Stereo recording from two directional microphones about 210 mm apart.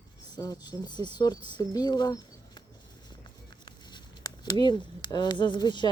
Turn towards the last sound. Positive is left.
turn(degrees=20)  # may be behind; listen again after turning